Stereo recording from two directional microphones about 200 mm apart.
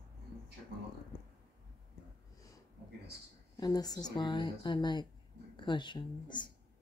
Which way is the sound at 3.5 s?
20° left (ahead or behind).